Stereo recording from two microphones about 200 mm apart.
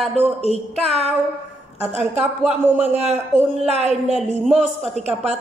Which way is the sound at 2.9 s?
35° right (ahead or behind).